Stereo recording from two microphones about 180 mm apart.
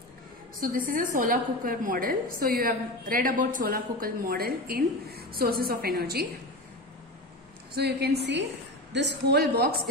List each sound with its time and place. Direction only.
0.6 s a woman's voice: 50° right (ahead or behind)
7.7 s a woman's voice: 65° right (ahead or behind)